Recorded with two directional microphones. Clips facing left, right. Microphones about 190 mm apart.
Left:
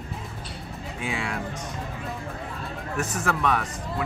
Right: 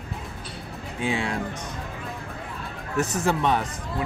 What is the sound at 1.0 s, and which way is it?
Speech, 30° right (ahead or behind).